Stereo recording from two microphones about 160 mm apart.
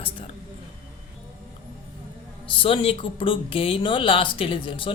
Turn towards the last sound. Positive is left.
turn(degrees=30)  # may be behind; listen again after turning